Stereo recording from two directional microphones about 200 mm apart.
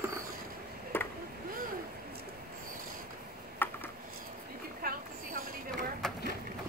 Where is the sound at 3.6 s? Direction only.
10° left (ahead or behind).